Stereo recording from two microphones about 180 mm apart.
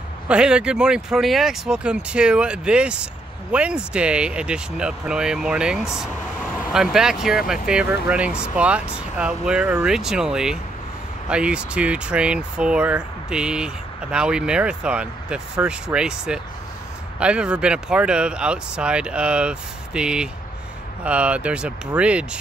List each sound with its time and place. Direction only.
0.3 s speech: 5° right (ahead or behind)